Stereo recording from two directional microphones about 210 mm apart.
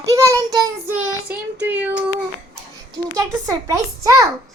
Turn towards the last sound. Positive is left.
turn(degrees=-15)  # may be behind; listen again after turning